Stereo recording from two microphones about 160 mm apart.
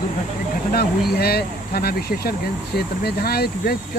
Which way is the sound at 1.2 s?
75° left (ahead or behind).